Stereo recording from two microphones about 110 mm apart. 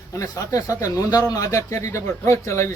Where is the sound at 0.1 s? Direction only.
30° left (ahead or behind).